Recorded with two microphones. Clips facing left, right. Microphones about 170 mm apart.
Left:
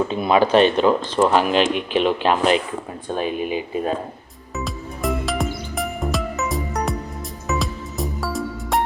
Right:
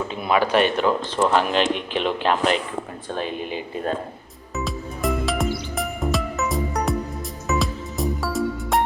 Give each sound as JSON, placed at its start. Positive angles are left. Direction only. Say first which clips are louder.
{"t": 0.1, "sound": "speech", "louder": "left 2 dB", "side_deg": 25}
{"t": 4.5, "sound": "music", "louder": "right 1 dB", "side_deg": 0}